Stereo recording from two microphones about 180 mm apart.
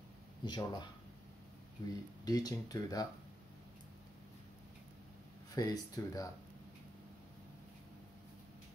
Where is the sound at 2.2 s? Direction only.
20° left (ahead or behind).